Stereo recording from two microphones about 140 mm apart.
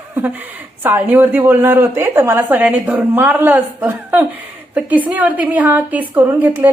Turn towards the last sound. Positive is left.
turn(degrees=-15)  # may be behind; listen again after turning